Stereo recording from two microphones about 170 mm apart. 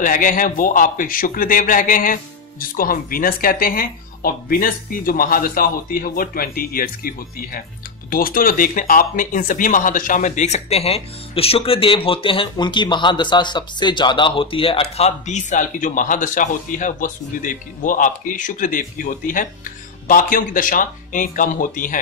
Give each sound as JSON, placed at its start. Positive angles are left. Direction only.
{"t": 0.0, "sound": "speech", "side_deg": 55}